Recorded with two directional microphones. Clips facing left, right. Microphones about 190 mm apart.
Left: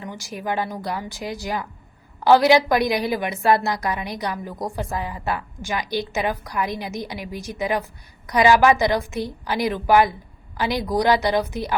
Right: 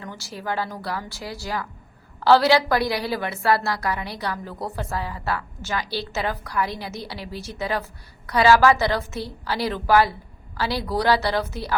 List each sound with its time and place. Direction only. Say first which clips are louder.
0.0 s a woman's voice: left 3 dB; 15° left (ahead or behind)